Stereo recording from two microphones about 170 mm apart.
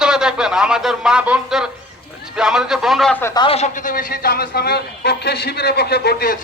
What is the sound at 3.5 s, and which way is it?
A man's voice, 45° left (ahead or behind).